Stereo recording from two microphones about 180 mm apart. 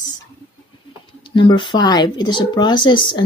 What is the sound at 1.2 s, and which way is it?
Speech, 25° left (ahead or behind).